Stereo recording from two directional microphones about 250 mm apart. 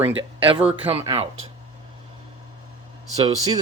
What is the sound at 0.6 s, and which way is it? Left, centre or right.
Speech, right.